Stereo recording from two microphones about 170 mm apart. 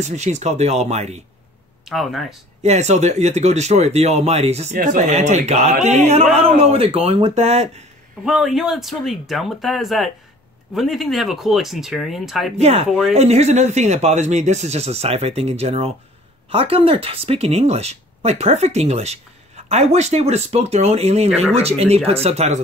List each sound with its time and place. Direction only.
0.0 s speech: 45° right (ahead or behind)
1.9 s speech: centre (ahead or behind)
2.6 s speech: 40° right (ahead or behind)
4.7 s speech: 50° right (ahead or behind)
8.3 s speech: 5° right (ahead or behind)
12.5 s speech: 40° right (ahead or behind)